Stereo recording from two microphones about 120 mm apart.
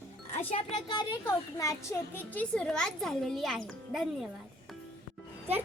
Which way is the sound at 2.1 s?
15° left (ahead or behind).